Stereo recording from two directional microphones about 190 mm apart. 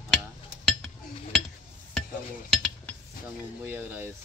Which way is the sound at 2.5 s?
Centre (ahead or behind).